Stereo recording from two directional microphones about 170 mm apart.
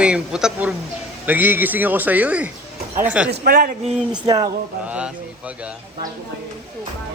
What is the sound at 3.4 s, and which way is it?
Speech, 60° right (ahead or behind).